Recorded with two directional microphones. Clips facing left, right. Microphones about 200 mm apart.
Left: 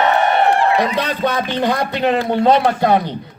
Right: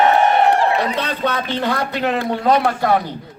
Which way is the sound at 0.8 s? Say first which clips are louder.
Left 3 dB; 10° left (ahead or behind).